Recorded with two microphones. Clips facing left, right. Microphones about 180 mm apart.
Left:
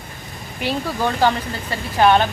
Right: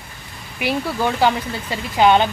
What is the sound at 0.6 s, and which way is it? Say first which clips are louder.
A woman's voice: right 1 dB; 10° right (ahead or behind).